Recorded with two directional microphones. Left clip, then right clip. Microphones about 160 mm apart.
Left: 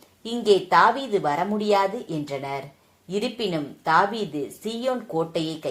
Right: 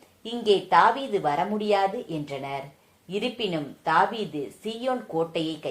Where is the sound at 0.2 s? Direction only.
30° left (ahead or behind).